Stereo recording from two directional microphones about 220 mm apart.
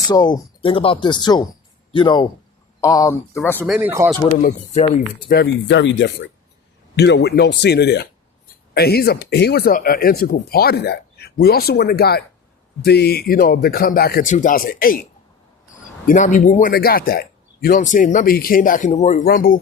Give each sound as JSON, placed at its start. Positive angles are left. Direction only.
{"t": 0.1, "sound": "speech", "side_deg": 20}
{"t": 3.6, "sound": "speech", "side_deg": -10}
{"t": 4.4, "sound": "speech", "side_deg": 30}
{"t": 5.3, "sound": "speech", "side_deg": 50}
{"t": 16.0, "sound": "speech", "side_deg": 35}